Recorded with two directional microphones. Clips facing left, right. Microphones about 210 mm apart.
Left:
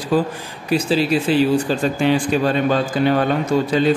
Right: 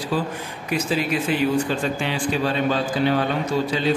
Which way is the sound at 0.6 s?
30° left (ahead or behind).